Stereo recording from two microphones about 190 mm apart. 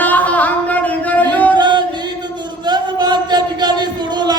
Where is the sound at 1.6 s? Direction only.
25° right (ahead or behind).